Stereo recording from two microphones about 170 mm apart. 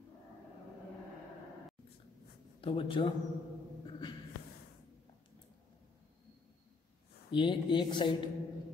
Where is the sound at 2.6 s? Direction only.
30° left (ahead or behind).